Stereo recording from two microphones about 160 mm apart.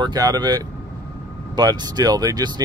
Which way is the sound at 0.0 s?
25° right (ahead or behind).